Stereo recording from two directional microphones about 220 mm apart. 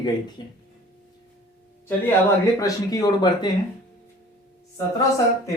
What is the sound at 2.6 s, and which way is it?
Speech, 15° left (ahead or behind).